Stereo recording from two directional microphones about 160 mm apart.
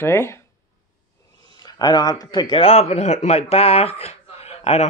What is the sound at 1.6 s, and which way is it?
Speech, 25° left (ahead or behind).